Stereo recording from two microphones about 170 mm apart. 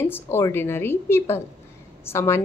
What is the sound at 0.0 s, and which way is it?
A woman's voice, 15° left (ahead or behind).